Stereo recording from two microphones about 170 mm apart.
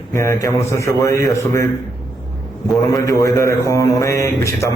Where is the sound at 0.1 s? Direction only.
20° left (ahead or behind).